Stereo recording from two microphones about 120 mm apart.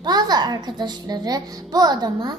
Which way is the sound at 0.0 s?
35° right (ahead or behind).